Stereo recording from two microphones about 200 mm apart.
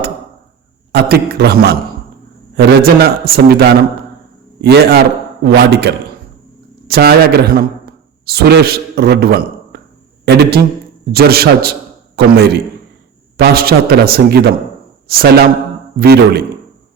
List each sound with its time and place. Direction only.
0.9 s a man's voice: 50° right (ahead or behind)